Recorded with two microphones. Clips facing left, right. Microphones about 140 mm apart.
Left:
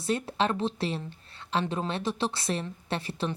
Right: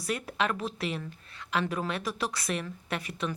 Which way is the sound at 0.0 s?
30° left (ahead or behind).